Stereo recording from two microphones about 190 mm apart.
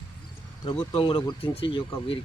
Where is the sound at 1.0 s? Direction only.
25° left (ahead or behind).